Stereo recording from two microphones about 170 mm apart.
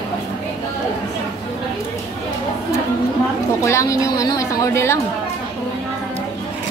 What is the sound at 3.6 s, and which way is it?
A woman's voice, 15° left (ahead or behind).